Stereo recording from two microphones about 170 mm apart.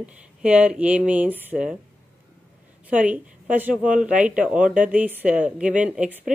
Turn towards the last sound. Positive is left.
turn(degrees=-10)  # may be behind; listen again after turning